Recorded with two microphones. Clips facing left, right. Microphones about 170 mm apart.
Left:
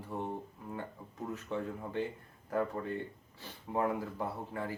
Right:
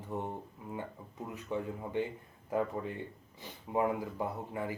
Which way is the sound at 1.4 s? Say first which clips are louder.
Right 3 dB; 15° right (ahead or behind).